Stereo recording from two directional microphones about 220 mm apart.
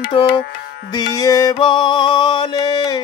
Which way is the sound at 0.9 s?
15° left (ahead or behind).